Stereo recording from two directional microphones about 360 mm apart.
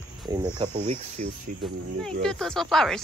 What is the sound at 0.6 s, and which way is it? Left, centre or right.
Cricket, centre.